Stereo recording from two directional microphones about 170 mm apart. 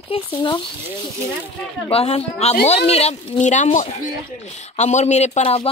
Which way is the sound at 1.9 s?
35° left (ahead or behind).